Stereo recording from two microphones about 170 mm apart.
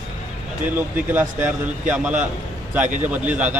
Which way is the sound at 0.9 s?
10° right (ahead or behind).